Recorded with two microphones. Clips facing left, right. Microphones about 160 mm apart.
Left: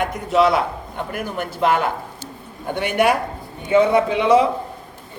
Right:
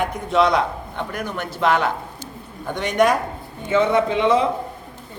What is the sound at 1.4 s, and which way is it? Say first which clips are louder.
Speech: left 1 dB; 45° left (ahead or behind).